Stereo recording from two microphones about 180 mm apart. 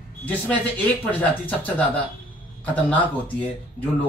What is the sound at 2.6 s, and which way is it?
Speech, 10° left (ahead or behind).